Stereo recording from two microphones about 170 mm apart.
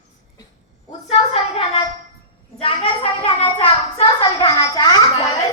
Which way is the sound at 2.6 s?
30° left (ahead or behind).